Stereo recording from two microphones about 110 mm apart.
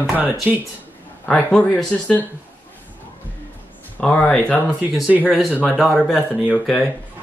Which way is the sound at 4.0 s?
10° left (ahead or behind).